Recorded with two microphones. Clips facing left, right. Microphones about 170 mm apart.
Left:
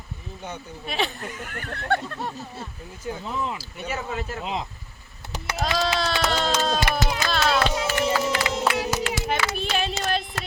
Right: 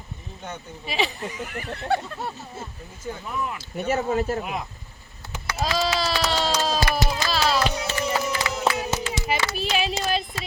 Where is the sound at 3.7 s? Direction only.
40° right (ahead or behind).